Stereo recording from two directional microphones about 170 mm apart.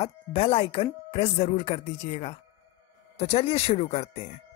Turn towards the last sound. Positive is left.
turn(degrees=40)  # may be behind; listen again after turning